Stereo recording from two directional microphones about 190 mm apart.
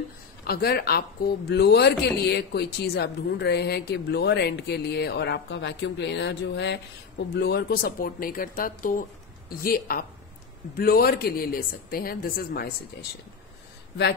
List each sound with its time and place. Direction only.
0.5 s a woman's voice: 55° left (ahead or behind)